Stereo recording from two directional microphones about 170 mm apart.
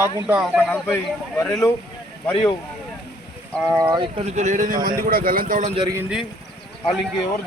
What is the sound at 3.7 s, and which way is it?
Speech, 30° right (ahead or behind).